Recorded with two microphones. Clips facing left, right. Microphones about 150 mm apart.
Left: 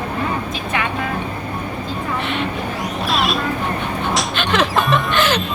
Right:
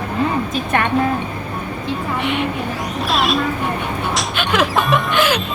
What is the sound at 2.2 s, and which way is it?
Vehicle, 15° right (ahead or behind).